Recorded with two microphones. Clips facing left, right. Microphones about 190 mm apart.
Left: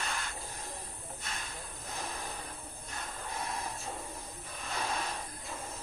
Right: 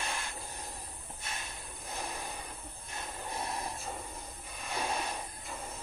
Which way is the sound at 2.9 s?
25° right (ahead or behind).